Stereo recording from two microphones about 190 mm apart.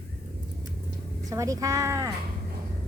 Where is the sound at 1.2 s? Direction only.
15° right (ahead or behind).